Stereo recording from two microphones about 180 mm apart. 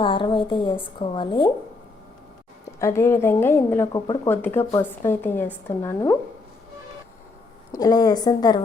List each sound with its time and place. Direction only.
0.0 s a woman's voice: 25° left (ahead or behind)
2.7 s a woman's voice: 15° left (ahead or behind)
7.7 s a woman's voice: 20° left (ahead or behind)